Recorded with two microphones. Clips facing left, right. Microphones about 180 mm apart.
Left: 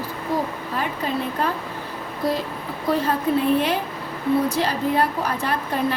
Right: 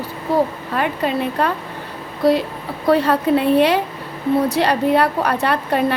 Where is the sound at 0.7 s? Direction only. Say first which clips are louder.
Right 5 dB; 70° right (ahead or behind).